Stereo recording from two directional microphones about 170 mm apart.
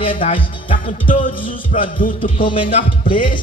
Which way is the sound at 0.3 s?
30° left (ahead or behind).